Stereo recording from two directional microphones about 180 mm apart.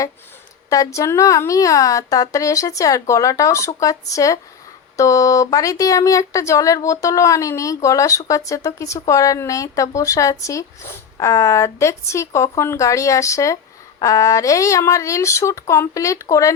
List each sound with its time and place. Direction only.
0.9 s speech: 15° left (ahead or behind)